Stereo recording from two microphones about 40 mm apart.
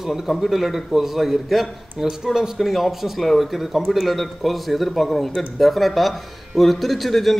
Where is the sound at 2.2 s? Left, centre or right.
Centre.